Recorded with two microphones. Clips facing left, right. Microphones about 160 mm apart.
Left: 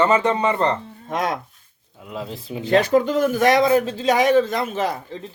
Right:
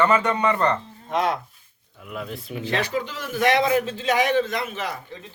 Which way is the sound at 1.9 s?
25° left (ahead or behind).